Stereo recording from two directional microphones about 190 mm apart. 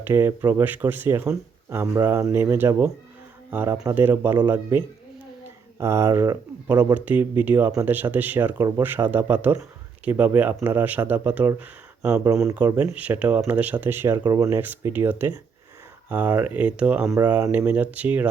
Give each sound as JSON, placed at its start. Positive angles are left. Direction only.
{"t": 0.0, "sound": "speech", "side_deg": -10}
{"t": 5.8, "sound": "speech", "side_deg": -15}